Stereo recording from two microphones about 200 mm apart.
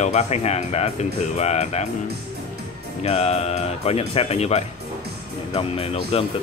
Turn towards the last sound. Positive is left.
turn(degrees=30)  # may be behind; listen again after turning